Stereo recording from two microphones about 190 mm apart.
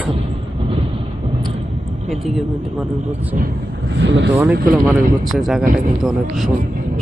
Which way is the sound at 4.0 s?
70° right (ahead or behind).